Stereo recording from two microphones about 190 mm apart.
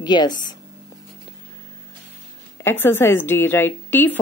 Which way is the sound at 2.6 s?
10° left (ahead or behind).